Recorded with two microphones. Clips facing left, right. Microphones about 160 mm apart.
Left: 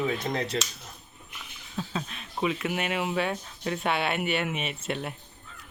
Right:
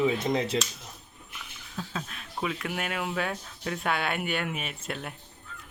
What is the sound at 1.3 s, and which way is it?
Speech, 5° left (ahead or behind).